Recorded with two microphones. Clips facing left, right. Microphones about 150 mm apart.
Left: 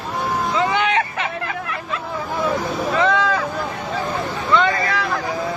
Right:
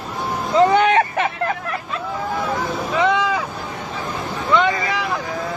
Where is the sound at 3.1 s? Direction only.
15° right (ahead or behind).